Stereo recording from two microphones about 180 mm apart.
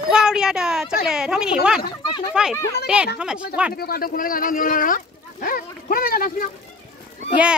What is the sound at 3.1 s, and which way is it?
Speech, 5° right (ahead or behind).